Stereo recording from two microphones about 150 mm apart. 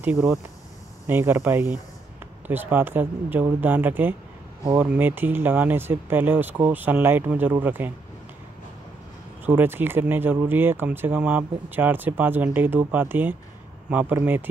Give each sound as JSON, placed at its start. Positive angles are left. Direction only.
{"t": 0.0, "sound": "speech", "side_deg": -10}
{"t": 9.5, "sound": "speech", "side_deg": -15}